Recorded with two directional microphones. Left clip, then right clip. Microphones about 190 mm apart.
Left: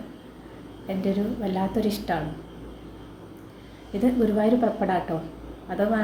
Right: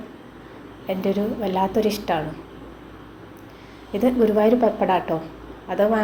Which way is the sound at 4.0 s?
5° left (ahead or behind).